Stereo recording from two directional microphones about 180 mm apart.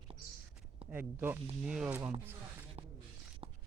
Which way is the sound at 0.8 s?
10° right (ahead or behind).